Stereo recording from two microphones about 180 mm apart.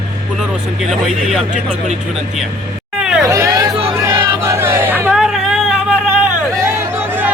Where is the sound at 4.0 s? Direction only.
15° right (ahead or behind).